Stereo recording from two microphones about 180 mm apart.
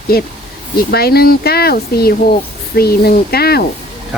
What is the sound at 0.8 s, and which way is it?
Speech, 60° left (ahead or behind).